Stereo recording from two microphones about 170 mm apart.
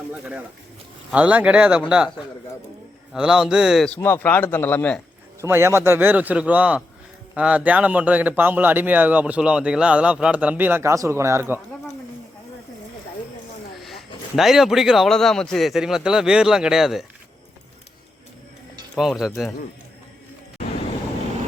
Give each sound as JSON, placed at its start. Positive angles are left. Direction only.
{"t": 1.1, "sound": "a man's voice", "side_deg": -10}
{"t": 5.4, "sound": "a man's voice", "side_deg": -15}
{"t": 13.7, "sound": "a sound", "side_deg": 0}
{"t": 14.3, "sound": "speech", "side_deg": 0}
{"t": 18.9, "sound": "speech", "side_deg": 0}